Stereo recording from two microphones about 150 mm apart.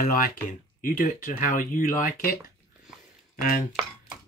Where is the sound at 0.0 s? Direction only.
70° left (ahead or behind).